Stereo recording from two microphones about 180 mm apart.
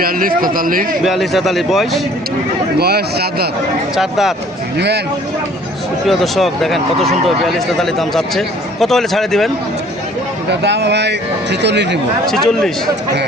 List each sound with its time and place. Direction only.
0.0 s a man's voice: 50° right (ahead or behind)
1.0 s speech: centre (ahead or behind)
2.7 s speech: 60° right (ahead or behind)
3.9 s speech: centre (ahead or behind)
6.1 s speech: centre (ahead or behind)
10.5 s speech: 70° right (ahead or behind)
12.2 s speech: centre (ahead or behind)